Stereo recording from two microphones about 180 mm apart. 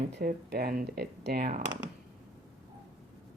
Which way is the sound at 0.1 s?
60° right (ahead or behind).